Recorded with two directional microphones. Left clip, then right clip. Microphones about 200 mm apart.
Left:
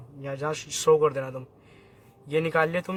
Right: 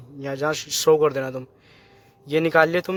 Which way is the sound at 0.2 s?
40° right (ahead or behind).